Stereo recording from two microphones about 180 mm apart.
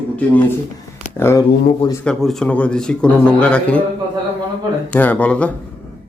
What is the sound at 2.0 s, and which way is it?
A man's voice, 5° left (ahead or behind).